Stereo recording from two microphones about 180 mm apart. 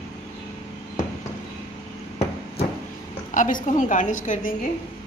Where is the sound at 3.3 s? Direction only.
45° left (ahead or behind).